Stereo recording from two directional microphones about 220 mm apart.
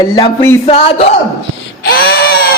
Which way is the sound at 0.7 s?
25° left (ahead or behind).